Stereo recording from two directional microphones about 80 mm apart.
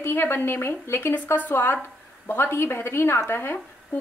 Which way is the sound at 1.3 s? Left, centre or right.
Left.